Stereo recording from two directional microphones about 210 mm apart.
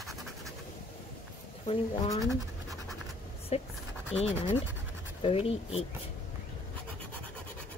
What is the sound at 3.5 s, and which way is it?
Speech, 30° left (ahead or behind).